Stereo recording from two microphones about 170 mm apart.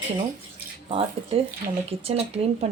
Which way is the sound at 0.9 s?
35° right (ahead or behind).